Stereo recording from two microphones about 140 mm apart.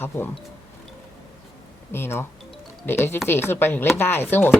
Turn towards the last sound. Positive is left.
turn(degrees=15)  # may be behind; listen again after turning